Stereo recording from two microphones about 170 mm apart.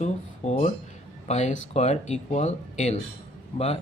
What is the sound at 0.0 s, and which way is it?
Speech, 40° left (ahead or behind).